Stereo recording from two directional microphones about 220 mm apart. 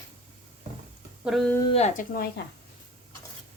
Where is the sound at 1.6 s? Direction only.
30° left (ahead or behind).